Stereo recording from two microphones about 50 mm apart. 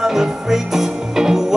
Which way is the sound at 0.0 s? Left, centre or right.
Centre.